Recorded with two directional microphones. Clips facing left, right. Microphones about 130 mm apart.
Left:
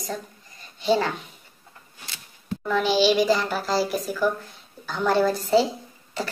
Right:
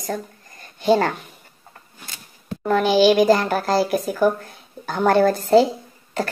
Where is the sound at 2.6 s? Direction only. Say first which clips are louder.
Right 5 dB; 50° right (ahead or behind).